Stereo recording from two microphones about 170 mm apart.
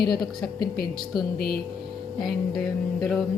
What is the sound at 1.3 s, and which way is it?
Speech, 65° left (ahead or behind).